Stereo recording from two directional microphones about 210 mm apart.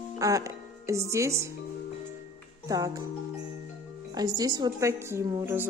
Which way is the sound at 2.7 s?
15° right (ahead or behind).